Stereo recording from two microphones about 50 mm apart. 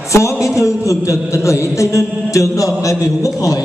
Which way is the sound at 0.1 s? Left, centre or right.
Left.